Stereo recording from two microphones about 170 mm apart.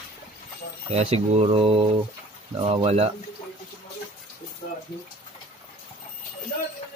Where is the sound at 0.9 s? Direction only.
40° right (ahead or behind).